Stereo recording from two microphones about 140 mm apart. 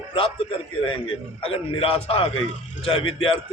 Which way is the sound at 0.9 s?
40° left (ahead or behind).